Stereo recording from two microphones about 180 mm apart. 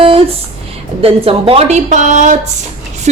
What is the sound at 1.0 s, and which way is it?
A woman's voice, 30° right (ahead or behind).